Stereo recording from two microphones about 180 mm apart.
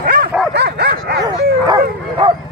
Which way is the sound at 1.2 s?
20° right (ahead or behind).